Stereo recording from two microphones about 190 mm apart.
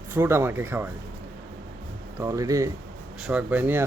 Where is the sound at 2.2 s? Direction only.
15° right (ahead or behind).